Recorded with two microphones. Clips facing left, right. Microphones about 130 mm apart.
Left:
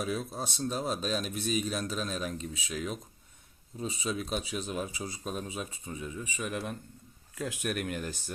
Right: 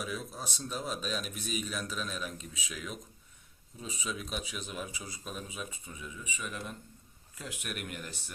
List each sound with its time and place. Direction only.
0.0 s speech: 35° left (ahead or behind)
6.5 s a man's voice: 55° left (ahead or behind)
7.4 s speech: 40° left (ahead or behind)